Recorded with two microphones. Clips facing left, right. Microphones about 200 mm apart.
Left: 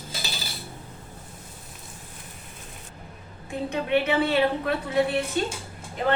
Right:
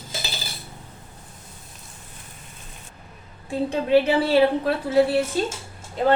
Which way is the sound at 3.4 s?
30° right (ahead or behind).